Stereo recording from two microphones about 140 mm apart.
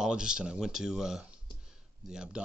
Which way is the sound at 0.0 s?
5° right (ahead or behind).